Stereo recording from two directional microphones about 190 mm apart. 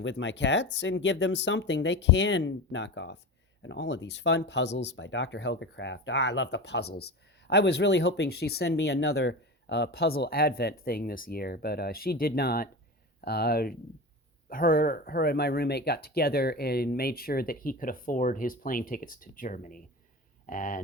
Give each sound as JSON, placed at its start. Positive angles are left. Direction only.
{"t": 0.0, "sound": "speech", "side_deg": 75}